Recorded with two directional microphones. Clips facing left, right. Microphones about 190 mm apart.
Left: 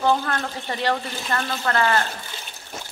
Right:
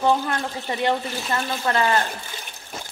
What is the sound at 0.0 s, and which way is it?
Speech, 10° right (ahead or behind).